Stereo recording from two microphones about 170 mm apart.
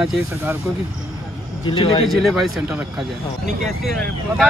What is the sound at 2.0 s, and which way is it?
Speech, centre (ahead or behind).